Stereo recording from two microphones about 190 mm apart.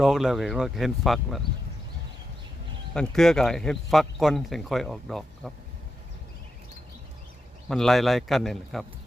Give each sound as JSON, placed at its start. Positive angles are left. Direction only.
{"t": 0.0, "sound": "speech", "side_deg": 0}
{"t": 2.9, "sound": "speech", "side_deg": 5}
{"t": 7.7, "sound": "speech", "side_deg": 0}